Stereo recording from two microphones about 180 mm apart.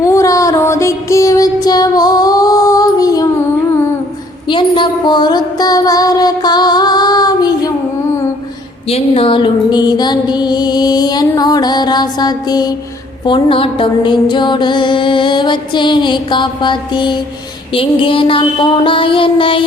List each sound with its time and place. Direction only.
0.0 s music: 15° left (ahead or behind)
4.4 s music: 25° left (ahead or behind)
8.9 s music: 35° left (ahead or behind)